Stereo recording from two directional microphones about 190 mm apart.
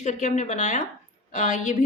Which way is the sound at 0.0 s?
40° left (ahead or behind).